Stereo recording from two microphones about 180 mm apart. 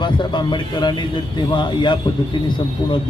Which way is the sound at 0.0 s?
25° left (ahead or behind).